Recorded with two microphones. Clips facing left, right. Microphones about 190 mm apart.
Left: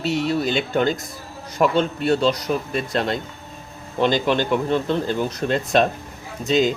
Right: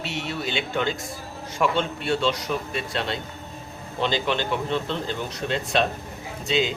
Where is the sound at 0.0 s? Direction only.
40° left (ahead or behind).